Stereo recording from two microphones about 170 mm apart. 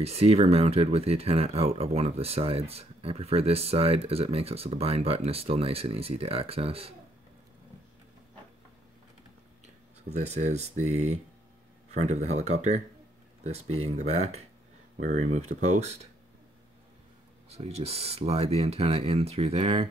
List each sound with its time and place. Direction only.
0.0 s speech: 35° right (ahead or behind)
10.1 s speech: 40° right (ahead or behind)
17.5 s speech: 35° right (ahead or behind)